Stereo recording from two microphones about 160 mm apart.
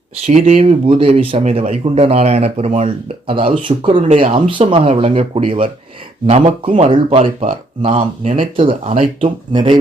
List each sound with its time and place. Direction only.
0.3 s speech: 45° right (ahead or behind)
3.9 s speech: 50° right (ahead or behind)
4.4 s speech: 30° right (ahead or behind)
8.5 s speech: 35° right (ahead or behind)